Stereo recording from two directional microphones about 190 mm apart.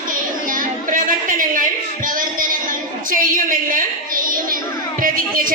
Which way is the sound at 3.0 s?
45° right (ahead or behind).